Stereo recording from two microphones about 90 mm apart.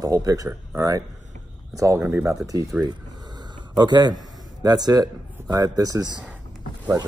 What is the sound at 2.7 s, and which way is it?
Speech, 10° right (ahead or behind).